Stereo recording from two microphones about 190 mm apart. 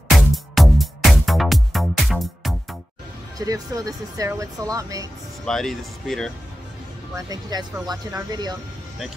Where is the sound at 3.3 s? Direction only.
20° right (ahead or behind).